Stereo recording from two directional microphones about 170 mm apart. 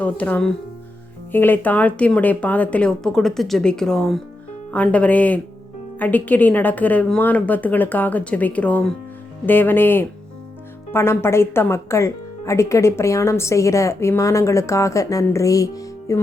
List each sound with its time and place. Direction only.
0.0 s speech: 10° left (ahead or behind)